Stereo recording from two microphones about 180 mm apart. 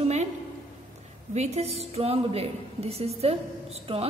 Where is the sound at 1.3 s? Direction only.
35° right (ahead or behind).